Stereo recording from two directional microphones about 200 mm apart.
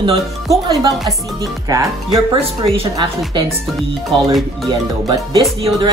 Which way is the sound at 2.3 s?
25° right (ahead or behind).